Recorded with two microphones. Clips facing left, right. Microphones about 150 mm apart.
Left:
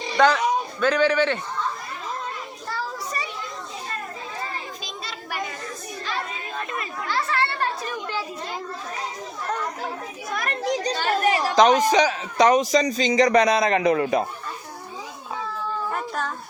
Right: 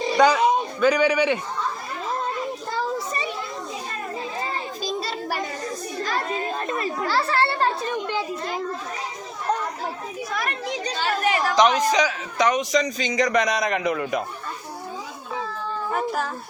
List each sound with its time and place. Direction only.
0.2 s a man's voice: 10° right (ahead or behind)
2.6 s children playing: 20° right (ahead or behind)
4.8 s children playing: 40° right (ahead or behind)
10.3 s chatter: 45° left (ahead or behind)
11.4 s a man's voice: 35° left (ahead or behind)
15.9 s a sound: 5° right (ahead or behind)